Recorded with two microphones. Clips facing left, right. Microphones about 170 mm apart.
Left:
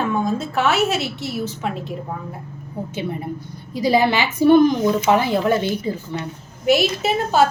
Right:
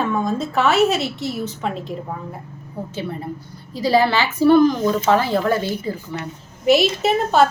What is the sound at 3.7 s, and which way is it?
A woman's voice, 15° left (ahead or behind).